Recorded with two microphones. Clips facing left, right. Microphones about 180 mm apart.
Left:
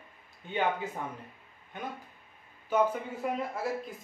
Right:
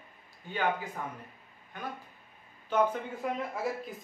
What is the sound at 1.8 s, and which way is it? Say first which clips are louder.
Speech: left 1 dB; 20° left (ahead or behind).